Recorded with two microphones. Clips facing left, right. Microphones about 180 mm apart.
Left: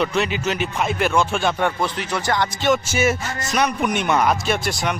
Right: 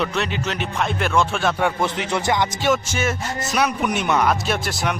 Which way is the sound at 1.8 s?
20° right (ahead or behind).